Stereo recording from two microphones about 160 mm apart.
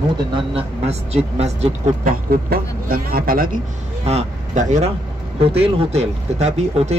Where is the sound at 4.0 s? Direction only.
40° right (ahead or behind).